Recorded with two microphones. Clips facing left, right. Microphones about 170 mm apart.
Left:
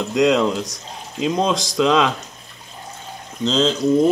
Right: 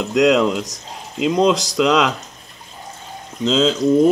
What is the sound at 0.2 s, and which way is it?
Speech, 5° right (ahead or behind).